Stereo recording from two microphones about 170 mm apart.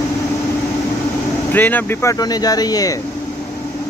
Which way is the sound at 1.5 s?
10° left (ahead or behind).